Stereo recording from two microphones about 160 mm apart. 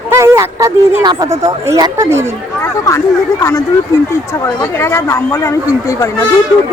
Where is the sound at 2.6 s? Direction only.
15° left (ahead or behind).